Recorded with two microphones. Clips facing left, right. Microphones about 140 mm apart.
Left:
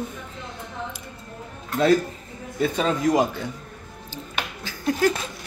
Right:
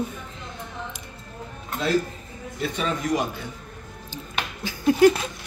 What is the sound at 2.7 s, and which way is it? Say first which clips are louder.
Speech: left 3 dB; 35° left (ahead or behind).